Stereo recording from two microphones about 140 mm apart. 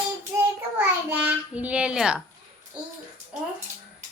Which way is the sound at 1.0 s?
10° right (ahead or behind).